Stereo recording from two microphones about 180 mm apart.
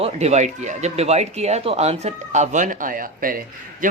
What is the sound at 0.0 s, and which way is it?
Speech, 35° right (ahead or behind).